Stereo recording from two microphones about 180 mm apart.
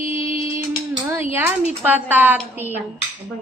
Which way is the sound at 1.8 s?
10° right (ahead or behind).